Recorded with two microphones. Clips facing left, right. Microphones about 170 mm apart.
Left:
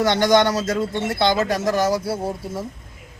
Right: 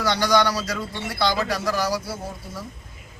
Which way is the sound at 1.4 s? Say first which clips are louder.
Left 4 dB; 45° left (ahead or behind).